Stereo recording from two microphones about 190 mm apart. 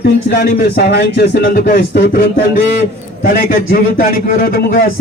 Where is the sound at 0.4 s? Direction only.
60° left (ahead or behind).